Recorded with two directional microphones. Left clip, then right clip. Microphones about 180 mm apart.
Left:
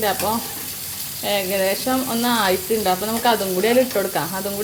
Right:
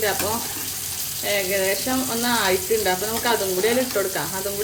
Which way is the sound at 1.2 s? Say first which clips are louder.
Left 2 dB; 35° left (ahead or behind).